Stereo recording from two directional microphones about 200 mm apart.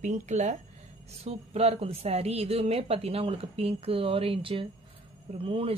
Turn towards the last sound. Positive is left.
turn(degrees=-30)  # may be behind; listen again after turning